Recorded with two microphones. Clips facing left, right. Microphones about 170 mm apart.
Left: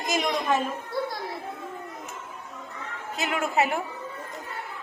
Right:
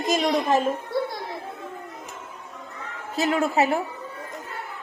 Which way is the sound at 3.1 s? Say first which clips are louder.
Right 4 dB; 35° right (ahead or behind).